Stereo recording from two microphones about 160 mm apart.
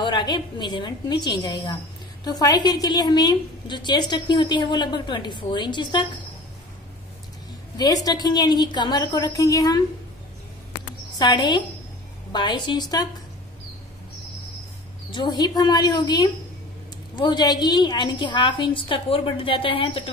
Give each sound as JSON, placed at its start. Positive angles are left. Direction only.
{"t": 0.0, "sound": "a woman's voice", "side_deg": 30}
{"t": 7.7, "sound": "a woman's voice", "side_deg": 25}
{"t": 11.1, "sound": "a woman's voice", "side_deg": 30}
{"t": 15.0, "sound": "a woman's voice", "side_deg": 30}